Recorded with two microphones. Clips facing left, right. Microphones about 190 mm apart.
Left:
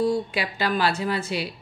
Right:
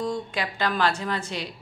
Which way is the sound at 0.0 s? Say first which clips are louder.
Left 5 dB; 5° left (ahead or behind).